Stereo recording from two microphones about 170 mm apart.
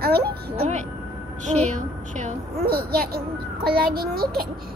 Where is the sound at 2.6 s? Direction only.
65° right (ahead or behind).